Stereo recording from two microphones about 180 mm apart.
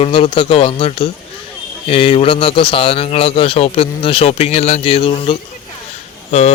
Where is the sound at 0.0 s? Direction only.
30° left (ahead or behind).